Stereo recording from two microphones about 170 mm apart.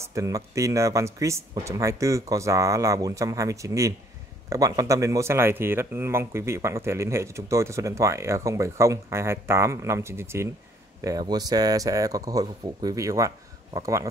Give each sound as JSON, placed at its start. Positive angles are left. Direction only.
{"t": 0.0, "sound": "speech", "side_deg": -20}